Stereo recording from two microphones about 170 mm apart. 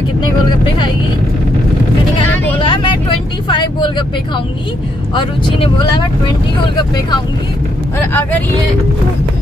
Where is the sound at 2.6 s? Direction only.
30° left (ahead or behind).